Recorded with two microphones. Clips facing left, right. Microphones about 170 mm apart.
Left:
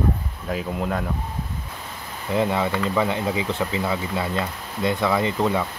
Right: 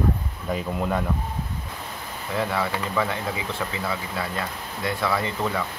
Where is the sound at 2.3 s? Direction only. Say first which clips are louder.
Left 4 dB; 20° left (ahead or behind).